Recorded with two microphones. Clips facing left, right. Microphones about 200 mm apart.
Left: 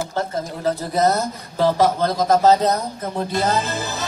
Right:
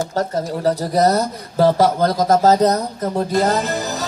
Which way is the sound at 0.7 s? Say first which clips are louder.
Right 2 dB; 40° right (ahead or behind).